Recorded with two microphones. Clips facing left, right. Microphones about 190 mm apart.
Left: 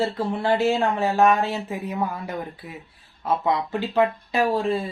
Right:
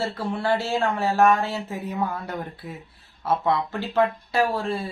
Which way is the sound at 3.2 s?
15° left (ahead or behind).